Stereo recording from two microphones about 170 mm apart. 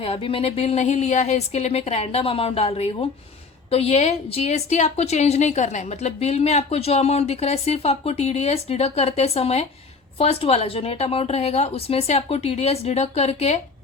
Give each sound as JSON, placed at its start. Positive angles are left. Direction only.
{"t": 0.0, "sound": "a woman's voice", "side_deg": 35}